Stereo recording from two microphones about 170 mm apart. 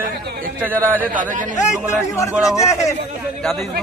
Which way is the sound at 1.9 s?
15° left (ahead or behind).